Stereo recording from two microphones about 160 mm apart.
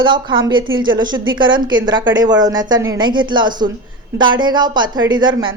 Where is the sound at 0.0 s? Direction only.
30° right (ahead or behind).